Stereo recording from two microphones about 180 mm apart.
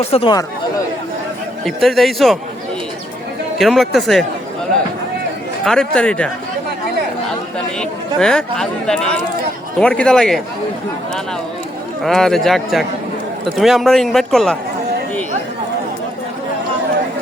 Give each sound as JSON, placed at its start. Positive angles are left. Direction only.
{"t": 0.0, "sound": "speech", "side_deg": 30}
{"t": 1.6, "sound": "speech", "side_deg": 0}
{"t": 3.6, "sound": "speech", "side_deg": 0}
{"t": 5.6, "sound": "speech", "side_deg": 5}
{"t": 7.8, "sound": "speech", "side_deg": 5}
{"t": 12.0, "sound": "speech", "side_deg": 0}